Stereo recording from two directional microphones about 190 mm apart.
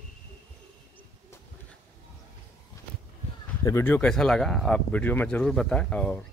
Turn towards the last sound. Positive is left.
turn(degrees=5)  # may be behind; listen again after turning